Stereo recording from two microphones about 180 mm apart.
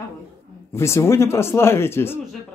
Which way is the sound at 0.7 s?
15° left (ahead or behind).